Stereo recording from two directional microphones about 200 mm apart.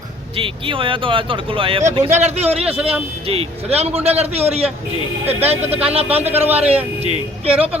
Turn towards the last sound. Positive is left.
turn(degrees=-30)  # may be behind; listen again after turning